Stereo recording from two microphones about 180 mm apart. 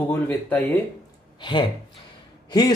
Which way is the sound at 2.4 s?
20° left (ahead or behind).